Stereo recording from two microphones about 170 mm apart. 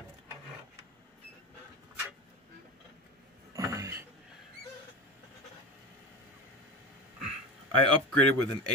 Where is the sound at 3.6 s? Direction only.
20° right (ahead or behind).